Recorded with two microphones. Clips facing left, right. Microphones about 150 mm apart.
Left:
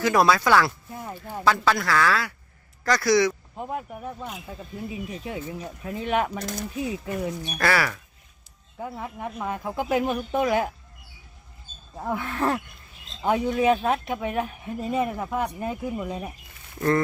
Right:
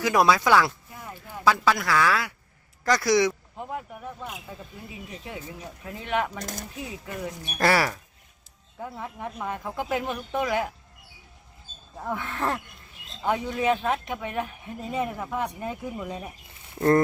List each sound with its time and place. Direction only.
0.0 s speech: 15° right (ahead or behind)
3.5 s speech: 20° left (ahead or behind)
5.2 s speech: 20° left (ahead or behind)
7.6 s speech: 35° right (ahead or behind)
8.8 s speech: 10° left (ahead or behind)
11.9 s speech: 10° left (ahead or behind)